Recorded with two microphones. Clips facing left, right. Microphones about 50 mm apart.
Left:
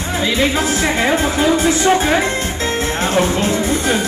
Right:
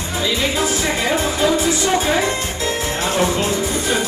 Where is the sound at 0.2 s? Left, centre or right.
Left.